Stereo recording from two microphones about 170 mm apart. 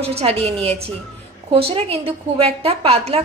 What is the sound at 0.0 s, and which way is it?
A woman's voice, 35° right (ahead or behind).